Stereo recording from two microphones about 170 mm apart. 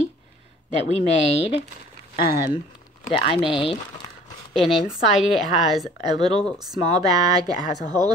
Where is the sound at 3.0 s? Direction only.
35° left (ahead or behind).